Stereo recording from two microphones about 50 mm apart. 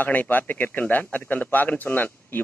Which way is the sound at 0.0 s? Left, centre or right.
Left.